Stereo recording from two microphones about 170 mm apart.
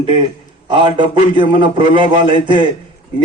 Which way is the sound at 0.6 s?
30° right (ahead or behind).